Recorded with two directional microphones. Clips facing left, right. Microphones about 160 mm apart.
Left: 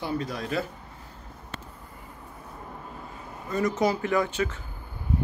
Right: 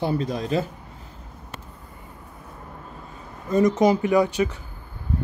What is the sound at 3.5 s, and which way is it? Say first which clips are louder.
Speech: right 7 dB; 20° right (ahead or behind).